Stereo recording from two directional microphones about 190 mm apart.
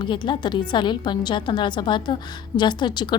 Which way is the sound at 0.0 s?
25° left (ahead or behind).